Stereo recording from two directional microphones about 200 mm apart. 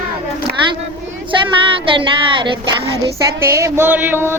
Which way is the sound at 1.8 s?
25° right (ahead or behind).